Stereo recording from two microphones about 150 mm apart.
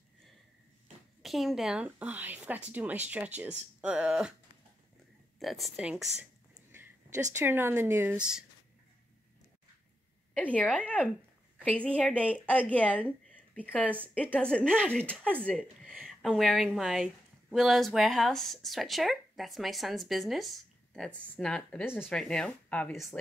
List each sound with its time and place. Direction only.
1.2 s speech: centre (ahead or behind)
5.4 s speech: centre (ahead or behind)
6.5 s a sound: 15° right (ahead or behind)
7.3 s speech: 15° right (ahead or behind)
10.3 s a woman's voice: 10° left (ahead or behind)